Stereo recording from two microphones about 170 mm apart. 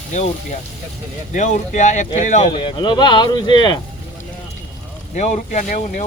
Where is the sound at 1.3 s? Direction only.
45° left (ahead or behind).